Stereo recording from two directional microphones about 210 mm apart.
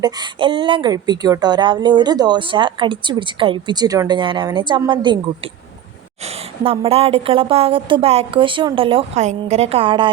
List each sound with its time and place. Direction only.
0.0 s a woman's voice: 20° right (ahead or behind)
6.7 s a woman's voice: 25° right (ahead or behind)